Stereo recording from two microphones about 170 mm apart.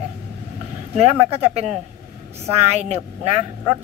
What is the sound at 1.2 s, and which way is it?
Speech, 35° right (ahead or behind).